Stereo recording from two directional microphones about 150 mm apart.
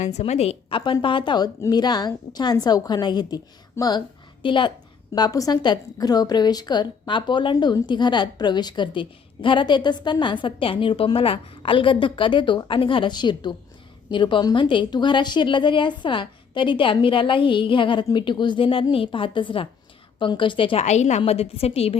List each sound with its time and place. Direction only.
0.0 s a woman's voice: 50° left (ahead or behind)
20.8 s a woman's voice: 50° left (ahead or behind)